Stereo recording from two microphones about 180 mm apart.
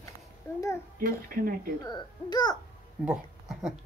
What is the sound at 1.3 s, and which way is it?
Speech, 50° right (ahead or behind).